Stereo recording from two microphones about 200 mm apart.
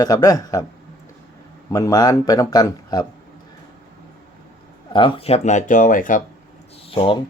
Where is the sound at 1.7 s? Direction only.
20° left (ahead or behind).